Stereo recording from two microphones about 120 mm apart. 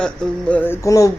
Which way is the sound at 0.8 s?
25° left (ahead or behind).